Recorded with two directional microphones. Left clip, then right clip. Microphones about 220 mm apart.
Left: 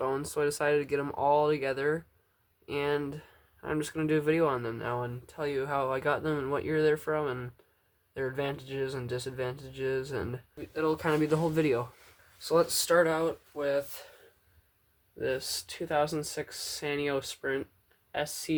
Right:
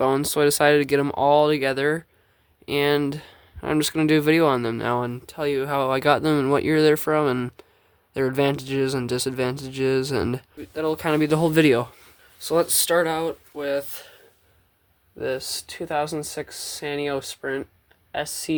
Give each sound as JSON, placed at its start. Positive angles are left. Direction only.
{"t": 0.0, "sound": "speech", "side_deg": -45}
{"t": 10.8, "sound": "speech", "side_deg": -35}
{"t": 15.2, "sound": "speech", "side_deg": -25}